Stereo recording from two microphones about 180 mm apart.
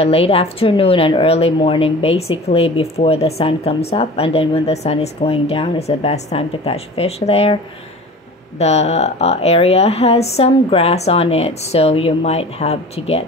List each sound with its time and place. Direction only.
0.0 s speech: 35° left (ahead or behind)
8.5 s speech: 35° left (ahead or behind)